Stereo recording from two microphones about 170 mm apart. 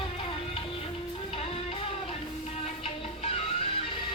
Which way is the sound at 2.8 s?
35° left (ahead or behind).